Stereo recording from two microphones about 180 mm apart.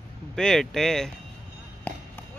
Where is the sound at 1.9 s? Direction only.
10° left (ahead or behind).